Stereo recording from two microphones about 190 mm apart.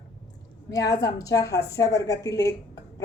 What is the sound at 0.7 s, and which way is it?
Speech, 20° left (ahead or behind).